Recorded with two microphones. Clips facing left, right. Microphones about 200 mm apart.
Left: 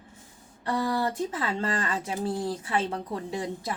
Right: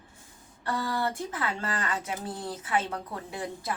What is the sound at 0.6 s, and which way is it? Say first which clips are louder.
Speech: left 3 dB; 20° left (ahead or behind).